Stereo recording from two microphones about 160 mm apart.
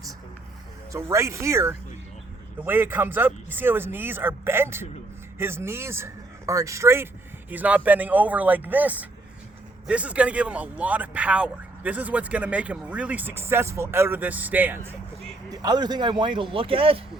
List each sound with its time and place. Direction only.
0.9 s speech: 20° right (ahead or behind)
15.4 s speech: 25° right (ahead or behind)